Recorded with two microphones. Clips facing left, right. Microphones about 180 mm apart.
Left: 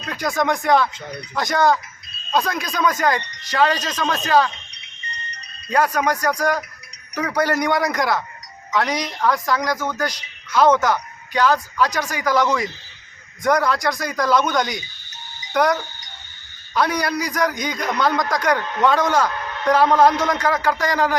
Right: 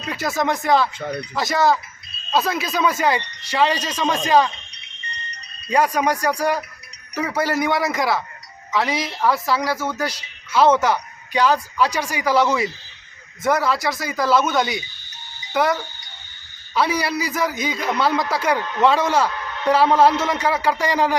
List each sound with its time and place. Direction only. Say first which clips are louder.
0.1 s a man's voice: left 1 dB; 5° right (ahead or behind)
5.7 s a man's voice: right 1 dB; 10° right (ahead or behind)